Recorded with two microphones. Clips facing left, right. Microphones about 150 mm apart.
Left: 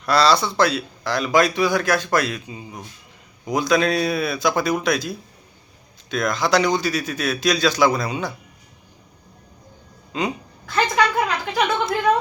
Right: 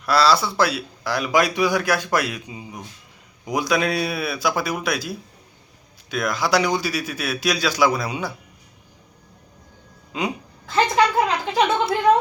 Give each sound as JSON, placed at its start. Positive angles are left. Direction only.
{"t": 0.0, "sound": "a man's voice", "side_deg": -5}
{"t": 10.1, "sound": "speech", "side_deg": -10}
{"t": 10.7, "sound": "a woman's voice", "side_deg": -25}